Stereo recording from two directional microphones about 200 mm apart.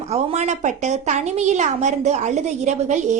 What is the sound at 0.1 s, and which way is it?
A woman's voice, 35° right (ahead or behind).